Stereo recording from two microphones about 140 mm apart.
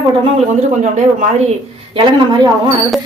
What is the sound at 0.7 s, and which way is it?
Speech, 60° right (ahead or behind).